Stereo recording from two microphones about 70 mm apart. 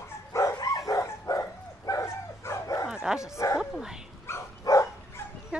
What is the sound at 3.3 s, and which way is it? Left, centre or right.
Bow-wow, left.